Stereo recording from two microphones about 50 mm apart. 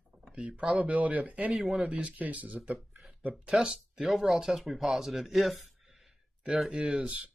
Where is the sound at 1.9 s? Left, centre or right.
Right.